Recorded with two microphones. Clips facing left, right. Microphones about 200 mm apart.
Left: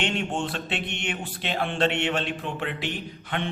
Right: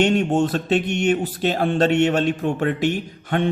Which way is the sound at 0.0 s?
40° right (ahead or behind).